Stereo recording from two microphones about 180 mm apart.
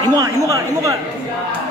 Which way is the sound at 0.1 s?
20° right (ahead or behind).